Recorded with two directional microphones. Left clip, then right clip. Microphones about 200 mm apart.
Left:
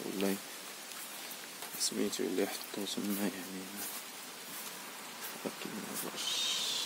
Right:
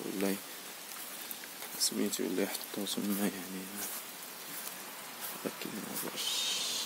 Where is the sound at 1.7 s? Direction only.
Centre (ahead or behind).